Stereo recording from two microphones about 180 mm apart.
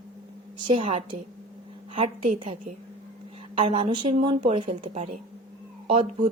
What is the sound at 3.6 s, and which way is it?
A woman's voice, 30° right (ahead or behind).